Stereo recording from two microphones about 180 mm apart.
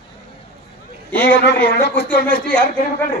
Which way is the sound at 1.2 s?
65° left (ahead or behind).